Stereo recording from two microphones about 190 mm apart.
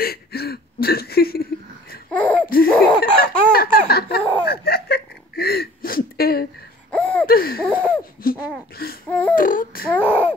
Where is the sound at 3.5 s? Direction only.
50° left (ahead or behind).